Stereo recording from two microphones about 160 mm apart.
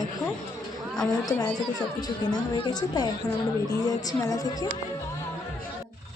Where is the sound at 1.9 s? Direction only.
25° left (ahead or behind).